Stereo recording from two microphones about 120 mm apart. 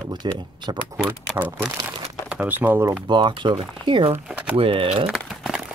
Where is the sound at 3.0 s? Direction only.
40° right (ahead or behind).